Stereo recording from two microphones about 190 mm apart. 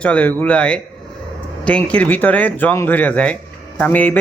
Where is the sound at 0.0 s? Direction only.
5° left (ahead or behind).